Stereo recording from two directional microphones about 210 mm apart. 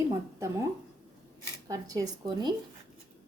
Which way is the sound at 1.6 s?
15° right (ahead or behind).